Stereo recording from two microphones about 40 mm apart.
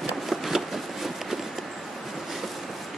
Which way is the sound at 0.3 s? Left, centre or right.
Centre.